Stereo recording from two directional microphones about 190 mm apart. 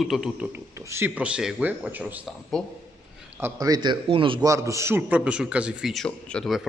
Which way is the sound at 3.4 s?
20° right (ahead or behind).